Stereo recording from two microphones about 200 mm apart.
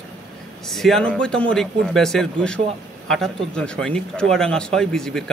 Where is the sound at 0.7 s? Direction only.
Centre (ahead or behind).